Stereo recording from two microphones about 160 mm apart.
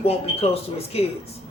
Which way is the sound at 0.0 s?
40° left (ahead or behind).